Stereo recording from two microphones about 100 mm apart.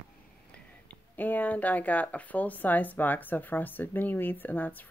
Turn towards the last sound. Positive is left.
turn(degrees=20)  # may be behind; listen again after turning